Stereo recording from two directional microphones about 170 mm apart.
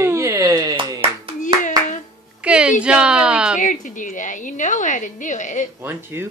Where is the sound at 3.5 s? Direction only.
50° left (ahead or behind).